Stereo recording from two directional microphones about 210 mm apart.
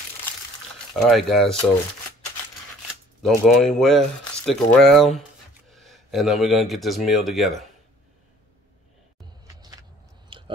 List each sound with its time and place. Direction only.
0.9 s speech: centre (ahead or behind)
3.2 s speech: centre (ahead or behind)
9.6 s vehicle: 20° right (ahead or behind)
10.3 s chewing: 25° right (ahead or behind)